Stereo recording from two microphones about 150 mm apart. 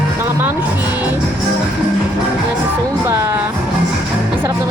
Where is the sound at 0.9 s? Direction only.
10° right (ahead or behind).